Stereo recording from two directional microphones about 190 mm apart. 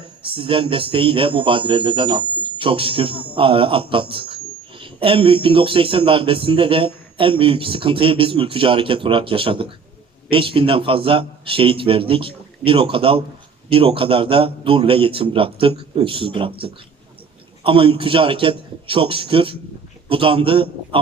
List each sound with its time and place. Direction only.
0.3 s speech: 30° right (ahead or behind)